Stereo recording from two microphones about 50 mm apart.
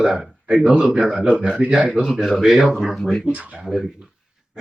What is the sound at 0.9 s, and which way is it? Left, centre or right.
Speech, centre.